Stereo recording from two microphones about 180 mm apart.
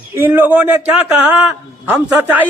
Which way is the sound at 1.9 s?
10° right (ahead or behind).